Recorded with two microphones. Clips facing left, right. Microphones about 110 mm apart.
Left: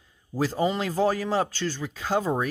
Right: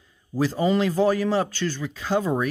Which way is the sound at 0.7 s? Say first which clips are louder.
Right 4 dB; 35° left (ahead or behind).